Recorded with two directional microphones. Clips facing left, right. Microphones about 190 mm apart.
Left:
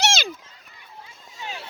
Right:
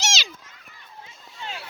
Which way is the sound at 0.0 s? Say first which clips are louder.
Left 6 dB; 55° left (ahead or behind).